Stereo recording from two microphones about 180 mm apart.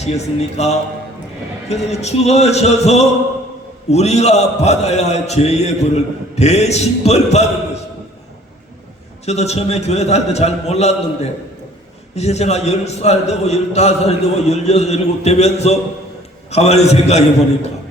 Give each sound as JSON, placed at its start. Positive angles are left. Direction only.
{"t": 0.0, "sound": "a man's voice", "side_deg": 35}
{"t": 9.2, "sound": "a man's voice", "side_deg": 35}